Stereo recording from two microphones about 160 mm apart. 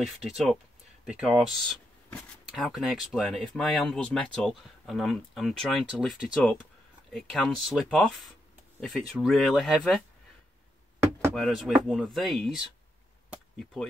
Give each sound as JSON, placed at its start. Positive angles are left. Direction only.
{"t": 0.0, "sound": "speech", "side_deg": 0}
{"t": 11.0, "sound": "a sound", "side_deg": -15}
{"t": 11.3, "sound": "speech", "side_deg": 0}